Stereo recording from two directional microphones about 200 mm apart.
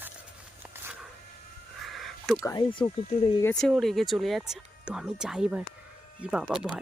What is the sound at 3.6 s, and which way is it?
Speech, centre (ahead or behind).